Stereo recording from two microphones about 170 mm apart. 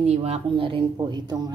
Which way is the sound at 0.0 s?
35° right (ahead or behind).